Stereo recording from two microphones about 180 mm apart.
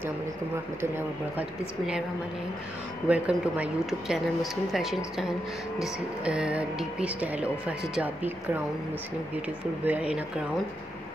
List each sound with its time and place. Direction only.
3.1 s speech: 5° right (ahead or behind)
9.8 s speech: 5° right (ahead or behind)